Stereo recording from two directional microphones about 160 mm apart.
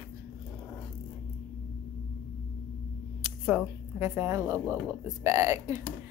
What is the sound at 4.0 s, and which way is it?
Speech, 15° right (ahead or behind).